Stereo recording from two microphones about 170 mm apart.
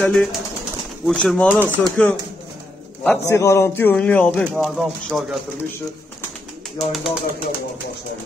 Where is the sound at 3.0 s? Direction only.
15° left (ahead or behind).